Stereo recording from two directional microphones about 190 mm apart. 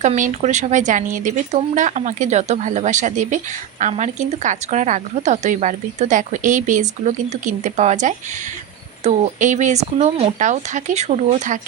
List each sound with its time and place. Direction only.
0.0 s speech: 40° right (ahead or behind)